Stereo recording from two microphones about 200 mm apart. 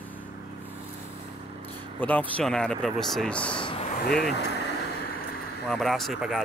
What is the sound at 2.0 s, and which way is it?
Speech, 10° left (ahead or behind).